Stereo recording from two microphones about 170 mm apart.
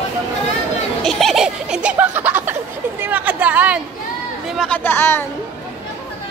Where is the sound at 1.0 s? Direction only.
Centre (ahead or behind).